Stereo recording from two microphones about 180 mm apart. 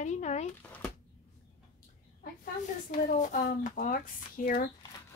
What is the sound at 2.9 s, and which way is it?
Speech, 45° left (ahead or behind).